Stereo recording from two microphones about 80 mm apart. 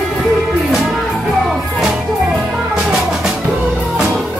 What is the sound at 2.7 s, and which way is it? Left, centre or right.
Music, centre.